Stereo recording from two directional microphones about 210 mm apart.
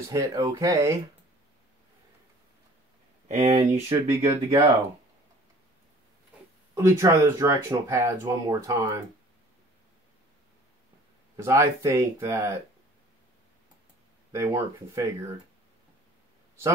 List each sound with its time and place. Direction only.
0.1 s speech: 15° right (ahead or behind)
3.3 s speech: 35° right (ahead or behind)
4.1 s speech: 15° right (ahead or behind)
6.7 s speech: 15° right (ahead or behind)
11.3 s speech: 15° right (ahead or behind)
14.3 s speech: 15° right (ahead or behind)